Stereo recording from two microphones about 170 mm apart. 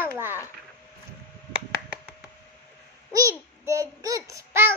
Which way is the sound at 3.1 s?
20° right (ahead or behind).